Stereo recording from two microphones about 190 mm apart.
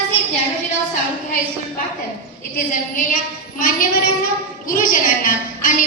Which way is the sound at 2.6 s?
45° left (ahead or behind).